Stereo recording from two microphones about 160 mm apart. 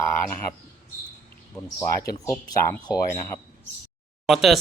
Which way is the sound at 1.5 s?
15° left (ahead or behind).